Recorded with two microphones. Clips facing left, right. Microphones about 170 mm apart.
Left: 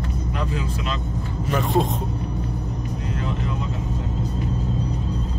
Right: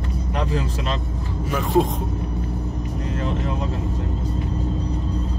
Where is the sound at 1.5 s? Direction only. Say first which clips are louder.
Right 2 dB; 10° right (ahead or behind).